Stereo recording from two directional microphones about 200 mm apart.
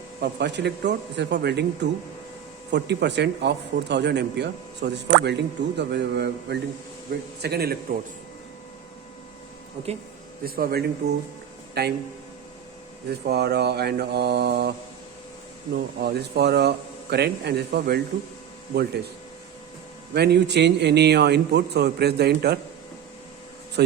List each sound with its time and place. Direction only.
0.2 s a man's voice: 60° right (ahead or behind)
10.4 s a man's voice: 50° right (ahead or behind)
13.1 s speech: 55° right (ahead or behind)
15.7 s speech: 55° right (ahead or behind)
20.1 s speech: 55° right (ahead or behind)